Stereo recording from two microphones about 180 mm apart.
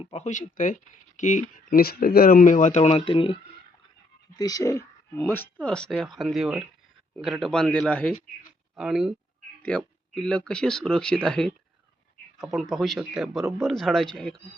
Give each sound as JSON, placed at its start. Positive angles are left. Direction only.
{"t": 0.0, "sound": "speech", "side_deg": 35}
{"t": 4.4, "sound": "speech", "side_deg": 20}